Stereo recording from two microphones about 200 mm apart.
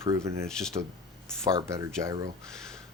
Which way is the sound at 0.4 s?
5° left (ahead or behind).